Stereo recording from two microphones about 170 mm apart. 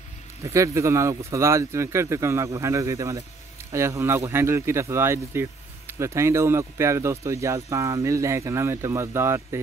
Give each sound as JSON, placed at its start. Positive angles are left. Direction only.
{"t": 0.4, "sound": "a man's voice", "side_deg": -20}